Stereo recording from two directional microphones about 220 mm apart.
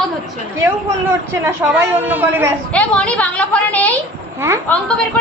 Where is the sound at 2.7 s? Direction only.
5° left (ahead or behind).